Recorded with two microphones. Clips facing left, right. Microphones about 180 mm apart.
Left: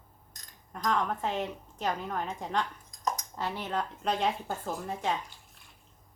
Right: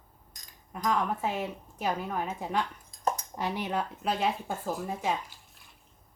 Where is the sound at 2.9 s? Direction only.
30° right (ahead or behind).